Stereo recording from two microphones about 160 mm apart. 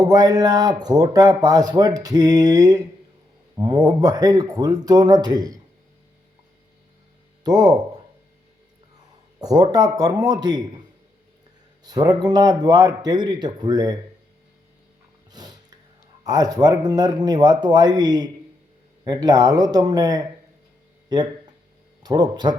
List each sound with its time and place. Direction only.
0.0 s speech: 20° right (ahead or behind)
7.4 s speech: 25° right (ahead or behind)
9.4 s speech: 25° right (ahead or behind)
11.8 s speech: 25° right (ahead or behind)
15.3 s a sound: 25° right (ahead or behind)
16.2 s speech: 25° right (ahead or behind)
21.1 s a sound: 25° right (ahead or behind)
22.0 s speech: 25° right (ahead or behind)